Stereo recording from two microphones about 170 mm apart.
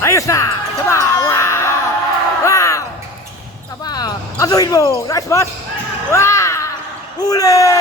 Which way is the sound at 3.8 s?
25° left (ahead or behind).